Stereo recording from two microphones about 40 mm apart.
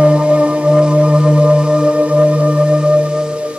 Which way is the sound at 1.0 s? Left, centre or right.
Right.